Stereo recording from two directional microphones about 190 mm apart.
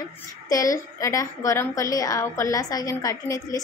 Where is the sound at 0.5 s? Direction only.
20° left (ahead or behind).